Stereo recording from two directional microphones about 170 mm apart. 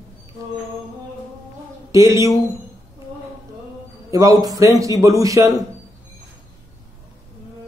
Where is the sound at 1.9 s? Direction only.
20° right (ahead or behind).